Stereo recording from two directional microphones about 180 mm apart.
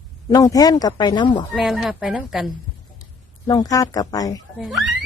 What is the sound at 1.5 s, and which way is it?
A woman's voice, centre (ahead or behind).